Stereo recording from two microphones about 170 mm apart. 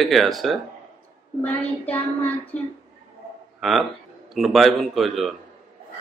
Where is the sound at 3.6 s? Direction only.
Centre (ahead or behind).